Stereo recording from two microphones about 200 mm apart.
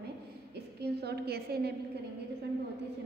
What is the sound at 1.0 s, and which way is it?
Speech, 55° right (ahead or behind).